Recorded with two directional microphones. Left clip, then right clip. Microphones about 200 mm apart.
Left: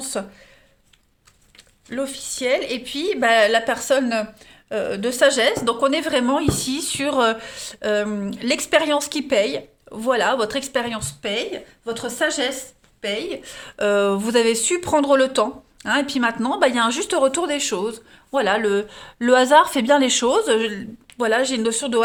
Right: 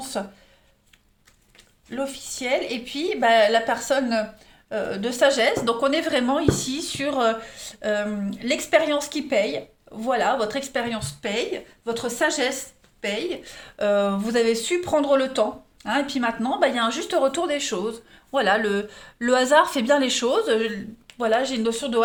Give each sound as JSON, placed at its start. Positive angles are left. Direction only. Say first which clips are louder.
{"t": 0.0, "sound": "a sound", "louder": "left 2 dB", "side_deg": 50}
{"t": 1.9, "sound": "speech", "louder": "left 3 dB", "side_deg": 50}
{"t": 18.3, "sound": "speech", "louder": "left 2 dB", "side_deg": 20}